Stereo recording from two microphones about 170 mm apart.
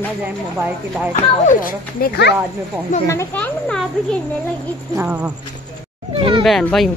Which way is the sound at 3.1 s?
15° left (ahead or behind).